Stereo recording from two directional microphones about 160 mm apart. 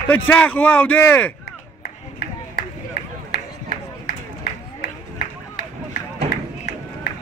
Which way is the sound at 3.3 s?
90° left.